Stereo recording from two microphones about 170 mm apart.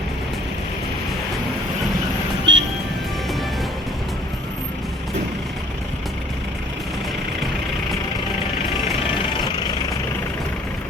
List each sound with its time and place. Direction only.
2.5 s music: 90° right